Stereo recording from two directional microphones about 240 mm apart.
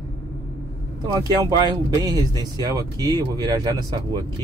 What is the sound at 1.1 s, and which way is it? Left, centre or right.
Speech, centre.